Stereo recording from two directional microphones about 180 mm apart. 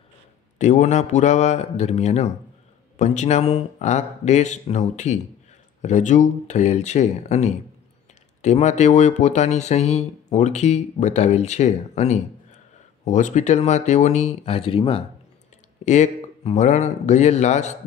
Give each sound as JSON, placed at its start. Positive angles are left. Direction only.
{"t": 0.6, "sound": "speech", "side_deg": 40}